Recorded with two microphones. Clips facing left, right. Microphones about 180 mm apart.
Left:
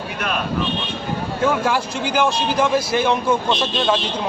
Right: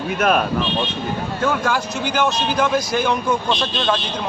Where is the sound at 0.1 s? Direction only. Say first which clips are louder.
Right 8 dB; 50° right (ahead or behind).